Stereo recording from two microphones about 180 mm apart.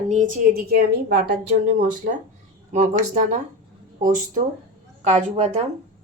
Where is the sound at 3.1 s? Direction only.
40° right (ahead or behind).